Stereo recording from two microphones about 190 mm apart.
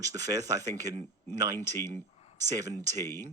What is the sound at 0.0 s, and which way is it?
Speech, 20° right (ahead or behind).